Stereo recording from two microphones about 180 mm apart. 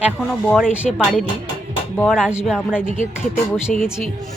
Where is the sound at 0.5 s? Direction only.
5° right (ahead or behind).